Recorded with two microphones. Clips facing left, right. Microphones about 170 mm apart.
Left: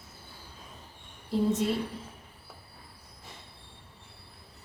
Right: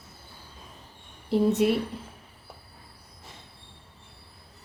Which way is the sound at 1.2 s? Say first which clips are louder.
Right 5 dB; 70° right (ahead or behind).